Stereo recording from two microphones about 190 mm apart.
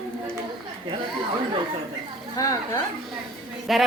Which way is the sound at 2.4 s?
15° left (ahead or behind).